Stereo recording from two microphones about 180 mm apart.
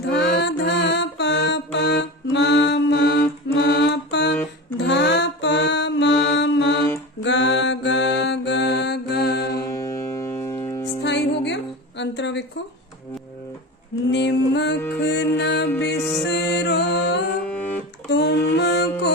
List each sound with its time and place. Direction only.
0.1 s music: 75° left (ahead or behind)
3.5 s music: 65° left (ahead or behind)
4.8 s mantra: 75° left (ahead or behind)
9.8 s music: 15° left (ahead or behind)
11.0 s music: 75° left (ahead or behind)
14.1 s mantra: 70° left (ahead or behind)
14.9 s music: 70° left (ahead or behind)
17.4 s music: 5° left (ahead or behind)
18.1 s music: 70° left (ahead or behind)